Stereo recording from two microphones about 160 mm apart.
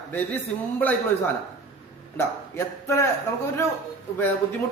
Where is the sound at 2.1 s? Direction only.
15° left (ahead or behind).